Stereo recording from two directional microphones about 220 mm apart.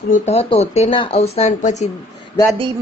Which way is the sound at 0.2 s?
25° left (ahead or behind).